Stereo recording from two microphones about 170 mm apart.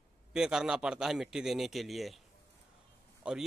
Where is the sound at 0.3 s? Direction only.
5° right (ahead or behind).